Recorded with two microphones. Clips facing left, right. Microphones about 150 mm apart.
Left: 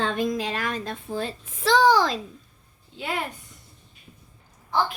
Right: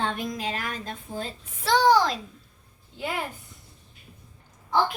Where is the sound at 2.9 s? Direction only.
75° left (ahead or behind).